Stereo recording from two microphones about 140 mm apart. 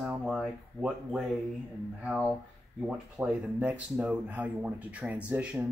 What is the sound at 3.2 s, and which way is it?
Speech, 10° right (ahead or behind).